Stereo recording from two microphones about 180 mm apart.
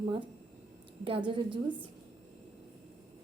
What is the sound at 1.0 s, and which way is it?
Speech, 30° right (ahead or behind).